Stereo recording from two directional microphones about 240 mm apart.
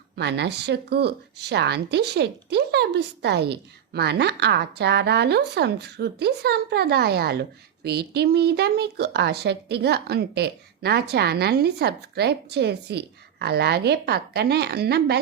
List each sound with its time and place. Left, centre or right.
0.2 s speech: right